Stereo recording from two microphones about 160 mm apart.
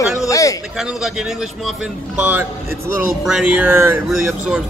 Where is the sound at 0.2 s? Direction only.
20° left (ahead or behind).